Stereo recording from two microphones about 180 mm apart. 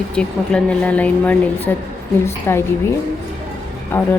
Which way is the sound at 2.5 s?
15° left (ahead or behind).